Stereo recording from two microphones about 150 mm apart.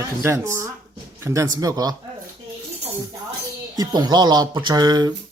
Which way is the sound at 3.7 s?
25° right (ahead or behind).